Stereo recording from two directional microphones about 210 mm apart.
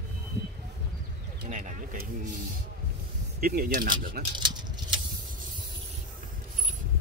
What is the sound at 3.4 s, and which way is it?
Speech, 45° right (ahead or behind).